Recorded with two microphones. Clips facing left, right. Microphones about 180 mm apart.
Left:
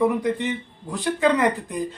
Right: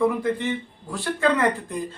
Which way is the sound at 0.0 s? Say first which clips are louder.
Left 1 dB; 15° left (ahead or behind).